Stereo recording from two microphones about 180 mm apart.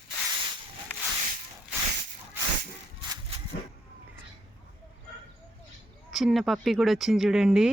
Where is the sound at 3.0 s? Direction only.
20° right (ahead or behind).